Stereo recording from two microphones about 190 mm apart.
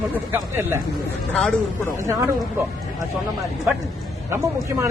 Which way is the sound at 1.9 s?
15° right (ahead or behind).